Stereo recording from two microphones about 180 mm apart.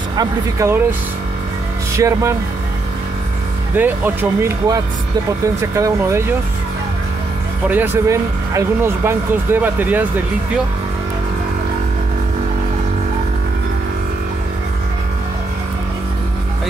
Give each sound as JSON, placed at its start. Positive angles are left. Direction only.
{"t": 0.2, "sound": "speech", "side_deg": -15}
{"t": 2.0, "sound": "speech", "side_deg": -15}
{"t": 3.7, "sound": "speech", "side_deg": -10}
{"t": 7.6, "sound": "speech", "side_deg": -10}